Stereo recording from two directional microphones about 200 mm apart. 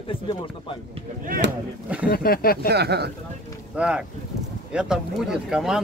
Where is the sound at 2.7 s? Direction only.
55° right (ahead or behind).